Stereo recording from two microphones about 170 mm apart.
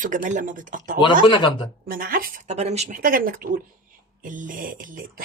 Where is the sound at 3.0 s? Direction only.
55° right (ahead or behind).